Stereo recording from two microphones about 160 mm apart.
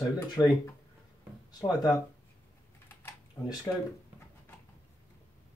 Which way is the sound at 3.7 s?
10° left (ahead or behind).